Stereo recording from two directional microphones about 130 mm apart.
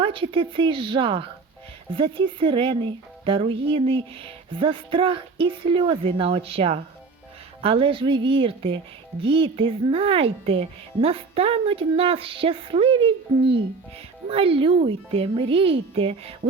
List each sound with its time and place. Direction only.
0.0 s speech: 40° right (ahead or behind)